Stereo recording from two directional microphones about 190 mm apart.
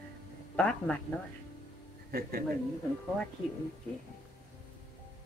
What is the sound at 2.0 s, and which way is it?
Speech, 50° right (ahead or behind).